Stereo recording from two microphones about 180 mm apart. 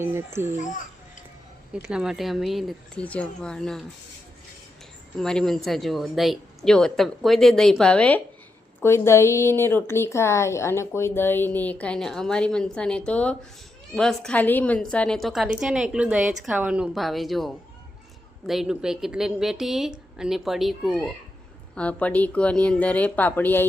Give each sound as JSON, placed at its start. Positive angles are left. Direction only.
{"t": 0.0, "sound": "speech", "side_deg": -15}
{"t": 1.7, "sound": "a woman's voice", "side_deg": -5}
{"t": 5.2, "sound": "a woman's voice", "side_deg": 5}